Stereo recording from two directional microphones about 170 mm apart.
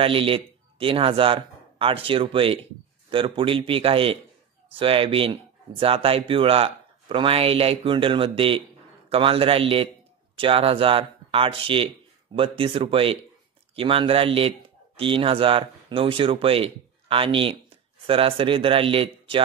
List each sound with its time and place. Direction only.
0.0 s speech: 30° right (ahead or behind)